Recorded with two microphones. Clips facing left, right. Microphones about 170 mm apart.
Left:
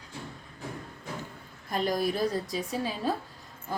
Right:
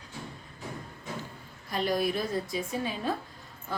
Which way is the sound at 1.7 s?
50° left (ahead or behind).